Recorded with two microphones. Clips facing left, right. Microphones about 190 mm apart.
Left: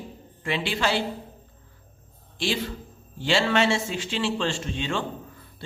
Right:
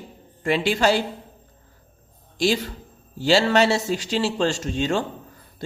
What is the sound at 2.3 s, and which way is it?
A man's voice, 40° right (ahead or behind).